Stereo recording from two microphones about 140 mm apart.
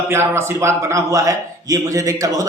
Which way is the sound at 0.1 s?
15° right (ahead or behind).